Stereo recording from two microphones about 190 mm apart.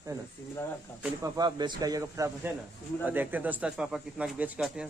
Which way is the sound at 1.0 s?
20° right (ahead or behind).